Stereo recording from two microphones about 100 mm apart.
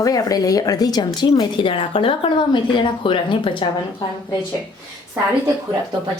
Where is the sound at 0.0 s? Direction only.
35° left (ahead or behind).